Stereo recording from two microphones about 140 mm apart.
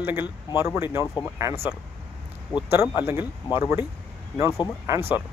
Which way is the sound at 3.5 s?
15° right (ahead or behind).